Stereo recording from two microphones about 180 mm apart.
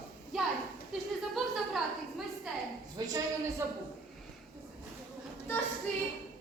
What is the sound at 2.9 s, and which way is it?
Speech, 20° right (ahead or behind).